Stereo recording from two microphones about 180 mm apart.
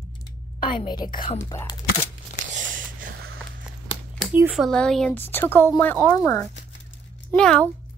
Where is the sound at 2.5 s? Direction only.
45° right (ahead or behind).